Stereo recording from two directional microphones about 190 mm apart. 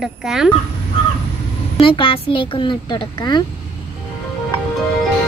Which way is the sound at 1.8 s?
25° left (ahead or behind).